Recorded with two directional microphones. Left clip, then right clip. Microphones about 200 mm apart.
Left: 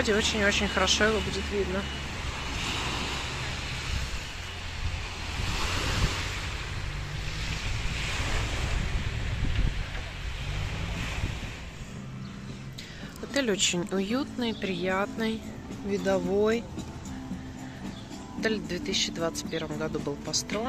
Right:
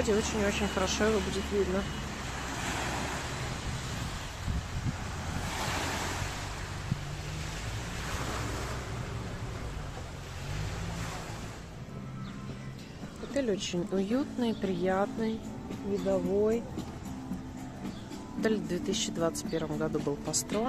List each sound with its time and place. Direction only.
0.0 s speech: 5° right (ahead or behind)
13.3 s speech: 5° left (ahead or behind)
16.1 s speech: 5° left (ahead or behind)
18.4 s speech: 20° right (ahead or behind)